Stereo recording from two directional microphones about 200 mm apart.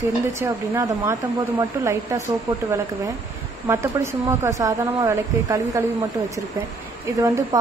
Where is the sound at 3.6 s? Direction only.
10° right (ahead or behind).